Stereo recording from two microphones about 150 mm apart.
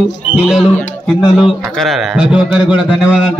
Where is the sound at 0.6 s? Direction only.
10° left (ahead or behind).